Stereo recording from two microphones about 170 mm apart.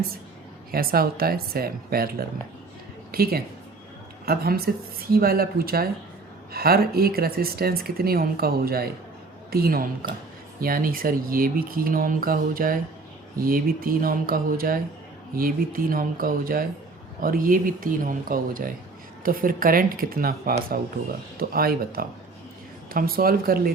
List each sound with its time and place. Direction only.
0.7 s speech: 60° right (ahead or behind)